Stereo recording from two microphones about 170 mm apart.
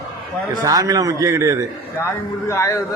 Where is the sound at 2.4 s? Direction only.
15° left (ahead or behind).